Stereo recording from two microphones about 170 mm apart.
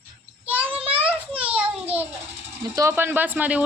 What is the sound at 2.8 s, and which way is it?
Speech, 15° right (ahead or behind).